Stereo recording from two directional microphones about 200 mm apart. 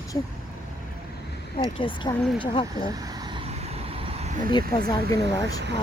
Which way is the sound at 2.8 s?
20° right (ahead or behind).